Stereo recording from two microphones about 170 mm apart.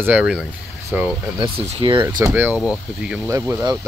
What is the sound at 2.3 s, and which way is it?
Speech, 10° right (ahead or behind).